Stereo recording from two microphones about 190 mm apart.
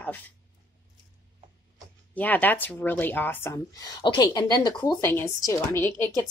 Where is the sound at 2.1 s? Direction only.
10° left (ahead or behind).